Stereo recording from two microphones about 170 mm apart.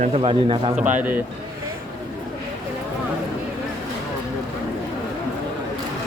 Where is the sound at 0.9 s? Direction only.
10° right (ahead or behind).